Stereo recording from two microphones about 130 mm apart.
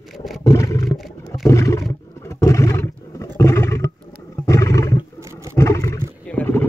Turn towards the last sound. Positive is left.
turn(degrees=15)  # may be behind; listen again after turning